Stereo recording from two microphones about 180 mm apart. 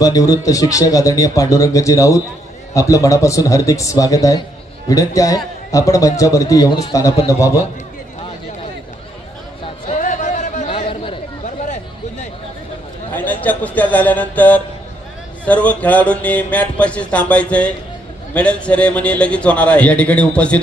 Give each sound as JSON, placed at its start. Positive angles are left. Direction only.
{"t": 0.0, "sound": "speech", "side_deg": 20}
{"t": 7.2, "sound": "music", "side_deg": 15}
{"t": 9.8, "sound": "a sound", "side_deg": 45}
{"t": 11.4, "sound": "a sound", "side_deg": 40}
{"t": 13.1, "sound": "a man's voice", "side_deg": 10}
{"t": 15.4, "sound": "music", "side_deg": 10}